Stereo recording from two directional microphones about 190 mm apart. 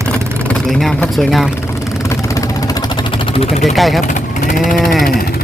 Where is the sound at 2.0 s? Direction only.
15° left (ahead or behind); by 3.7 s 35° left (ahead or behind).